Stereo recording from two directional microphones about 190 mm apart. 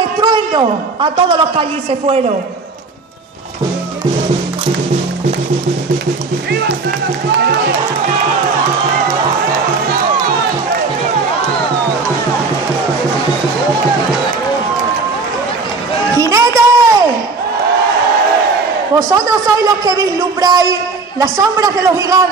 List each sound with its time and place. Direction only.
0.2 s a man's voice: 25° right (ahead or behind)
16.2 s a sound: 15° right (ahead or behind)
18.9 s a man's voice: 15° right (ahead or behind)